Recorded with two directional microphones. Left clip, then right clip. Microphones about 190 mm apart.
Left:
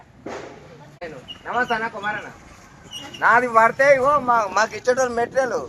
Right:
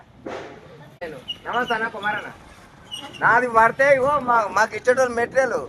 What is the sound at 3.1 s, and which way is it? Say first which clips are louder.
A man's voice: left 1 dB; 10° right (ahead or behind).